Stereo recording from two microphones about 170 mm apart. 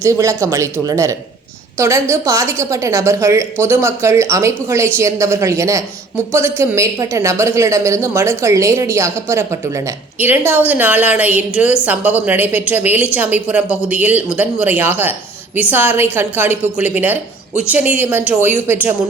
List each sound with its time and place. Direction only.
0.0 s a woman's voice: 20° right (ahead or behind)